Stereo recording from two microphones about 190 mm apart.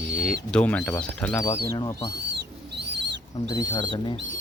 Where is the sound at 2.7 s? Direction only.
65° right (ahead or behind).